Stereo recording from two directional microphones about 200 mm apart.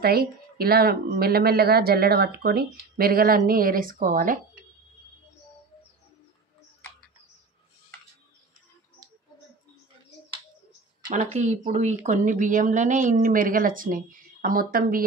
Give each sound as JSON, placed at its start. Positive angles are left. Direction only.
{"t": 0.0, "sound": "speech", "side_deg": -50}
{"t": 11.1, "sound": "speech", "side_deg": -35}